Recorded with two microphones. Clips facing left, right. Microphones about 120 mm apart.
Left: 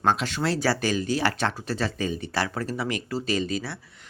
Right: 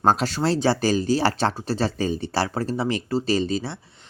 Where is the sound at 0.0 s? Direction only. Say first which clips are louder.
Right 4 dB; 40° right (ahead or behind).